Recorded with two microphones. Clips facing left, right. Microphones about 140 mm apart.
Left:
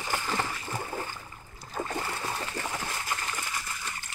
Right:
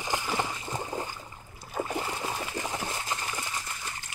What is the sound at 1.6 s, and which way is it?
Splash, 10° right (ahead or behind).